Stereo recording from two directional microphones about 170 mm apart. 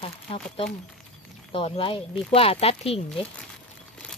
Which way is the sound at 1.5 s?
30° left (ahead or behind).